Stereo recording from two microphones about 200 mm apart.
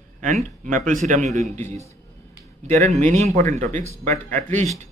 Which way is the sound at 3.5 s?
35° right (ahead or behind).